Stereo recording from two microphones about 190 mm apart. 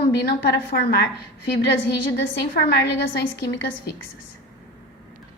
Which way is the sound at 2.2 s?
65° left (ahead or behind).